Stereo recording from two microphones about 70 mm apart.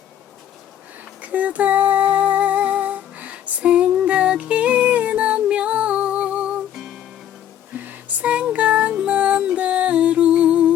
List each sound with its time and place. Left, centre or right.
1.2 s music: right
6.7 s music: centre
7.8 s a sound: right
8.4 s music: centre